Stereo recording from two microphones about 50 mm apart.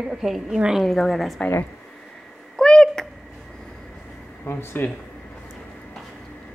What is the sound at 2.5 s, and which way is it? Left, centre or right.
Cat, centre.